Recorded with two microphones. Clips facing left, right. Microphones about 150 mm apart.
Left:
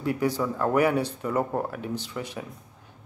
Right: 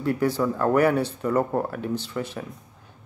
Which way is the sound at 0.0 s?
15° left (ahead or behind).